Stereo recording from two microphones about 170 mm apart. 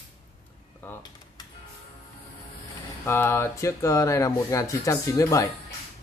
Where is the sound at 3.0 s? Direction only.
15° left (ahead or behind).